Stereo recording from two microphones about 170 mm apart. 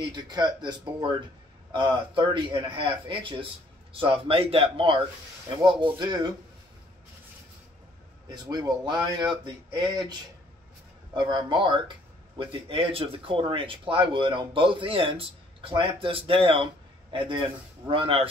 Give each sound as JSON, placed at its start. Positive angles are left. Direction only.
{"t": 0.0, "sound": "speech", "side_deg": -25}
{"t": 8.3, "sound": "speech", "side_deg": -25}
{"t": 11.1, "sound": "speech", "side_deg": -25}